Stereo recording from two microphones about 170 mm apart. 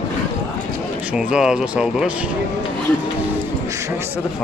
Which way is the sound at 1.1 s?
5° right (ahead or behind).